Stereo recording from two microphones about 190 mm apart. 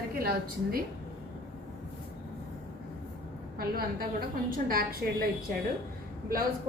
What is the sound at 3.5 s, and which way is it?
A woman's voice, 50° right (ahead or behind).